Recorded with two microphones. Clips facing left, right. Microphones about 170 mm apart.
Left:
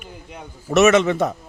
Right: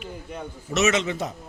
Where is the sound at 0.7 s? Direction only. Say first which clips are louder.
Left 8 dB; 55° left (ahead or behind).